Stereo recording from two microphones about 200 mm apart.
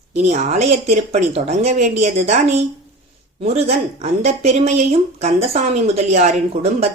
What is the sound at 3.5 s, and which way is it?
A woman's voice, 35° right (ahead or behind).